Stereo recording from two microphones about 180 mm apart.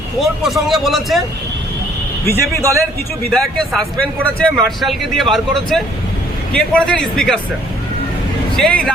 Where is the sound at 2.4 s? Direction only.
15° right (ahead or behind).